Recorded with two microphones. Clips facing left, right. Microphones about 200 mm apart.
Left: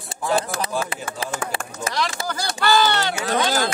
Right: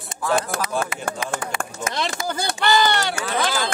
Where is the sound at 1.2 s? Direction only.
30° left (ahead or behind).